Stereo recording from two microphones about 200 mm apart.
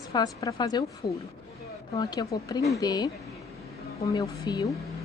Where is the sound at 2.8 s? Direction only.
20° left (ahead or behind).